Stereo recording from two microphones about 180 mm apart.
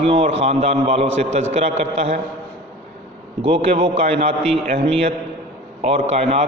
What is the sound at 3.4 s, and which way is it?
A man's voice, 30° right (ahead or behind).